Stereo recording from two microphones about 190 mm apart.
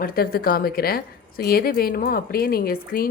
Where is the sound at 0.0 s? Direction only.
50° left (ahead or behind).